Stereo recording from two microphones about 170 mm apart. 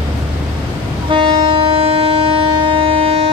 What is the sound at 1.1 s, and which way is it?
Train, 30° right (ahead or behind).